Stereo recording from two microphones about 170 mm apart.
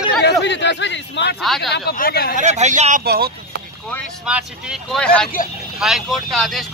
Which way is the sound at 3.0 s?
65° right (ahead or behind).